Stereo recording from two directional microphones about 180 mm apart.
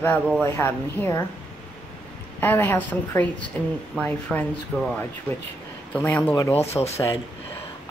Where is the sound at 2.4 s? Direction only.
10° left (ahead or behind).